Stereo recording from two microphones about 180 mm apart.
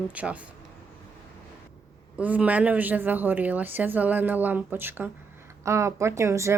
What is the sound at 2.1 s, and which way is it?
A woman's voice, 10° right (ahead or behind).